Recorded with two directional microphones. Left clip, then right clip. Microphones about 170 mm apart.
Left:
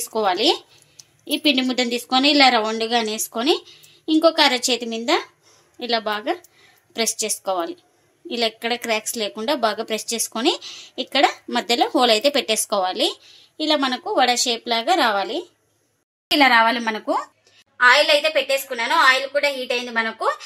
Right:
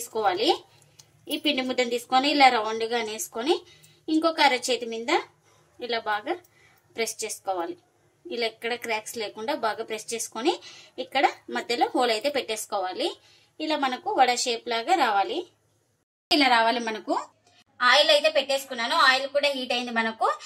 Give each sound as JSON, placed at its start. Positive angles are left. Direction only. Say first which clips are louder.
{"t": 0.1, "sound": "a woman's voice", "louder": "left 5 dB", "side_deg": 45}
{"t": 16.3, "sound": "a woman's voice", "louder": "left 6 dB", "side_deg": 35}
{"t": 17.7, "sound": "a woman's voice", "louder": "left 5 dB", "side_deg": 55}
{"t": 19.4, "sound": "a woman's voice", "louder": "left 4 dB", "side_deg": 45}